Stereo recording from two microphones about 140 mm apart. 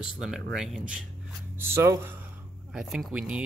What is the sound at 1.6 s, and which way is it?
Speech, 20° right (ahead or behind).